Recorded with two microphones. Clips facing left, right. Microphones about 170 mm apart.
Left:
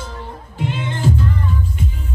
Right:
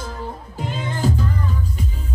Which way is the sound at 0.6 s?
40° right (ahead or behind).